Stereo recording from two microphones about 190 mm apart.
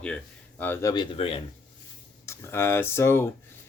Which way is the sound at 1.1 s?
30° left (ahead or behind).